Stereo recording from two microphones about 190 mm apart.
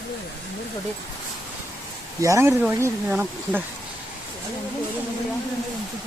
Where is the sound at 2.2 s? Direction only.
15° right (ahead or behind).